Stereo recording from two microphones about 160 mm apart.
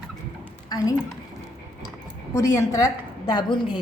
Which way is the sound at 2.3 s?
20° left (ahead or behind).